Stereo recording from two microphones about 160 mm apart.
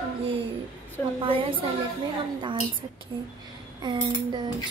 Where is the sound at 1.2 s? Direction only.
30° right (ahead or behind).